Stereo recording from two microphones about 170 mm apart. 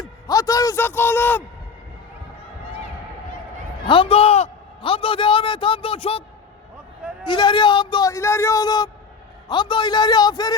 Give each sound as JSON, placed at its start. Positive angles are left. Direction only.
{"t": 0.0, "sound": "a man's voice", "side_deg": 20}
{"t": 3.8, "sound": "a man's voice", "side_deg": 30}
{"t": 7.3, "sound": "a man's voice", "side_deg": 30}